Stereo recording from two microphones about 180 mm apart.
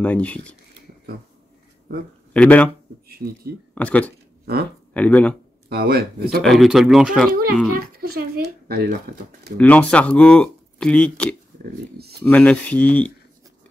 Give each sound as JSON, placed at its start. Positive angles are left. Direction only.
{"t": 0.0, "sound": "speech", "side_deg": 5}
{"t": 2.3, "sound": "speech", "side_deg": 10}
{"t": 3.1, "sound": "speech", "side_deg": -60}
{"t": 3.7, "sound": "speech", "side_deg": 10}
{"t": 4.5, "sound": "speech", "side_deg": -60}
{"t": 4.9, "sound": "speech", "side_deg": 10}
{"t": 5.7, "sound": "speech", "side_deg": -60}
{"t": 6.4, "sound": "speech", "side_deg": 0}
{"t": 7.7, "sound": "speech", "side_deg": -60}
{"t": 9.6, "sound": "speech", "side_deg": 5}
{"t": 12.0, "sound": "speech", "side_deg": -65}
{"t": 12.3, "sound": "speech", "side_deg": 5}